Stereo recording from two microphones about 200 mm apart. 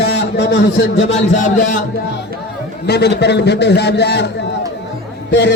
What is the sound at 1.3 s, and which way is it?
Speech, 40° left (ahead or behind).